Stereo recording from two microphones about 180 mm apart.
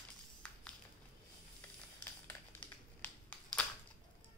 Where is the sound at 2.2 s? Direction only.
10° left (ahead or behind).